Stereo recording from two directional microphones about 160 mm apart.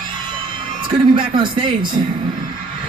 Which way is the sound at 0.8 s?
30° right (ahead or behind).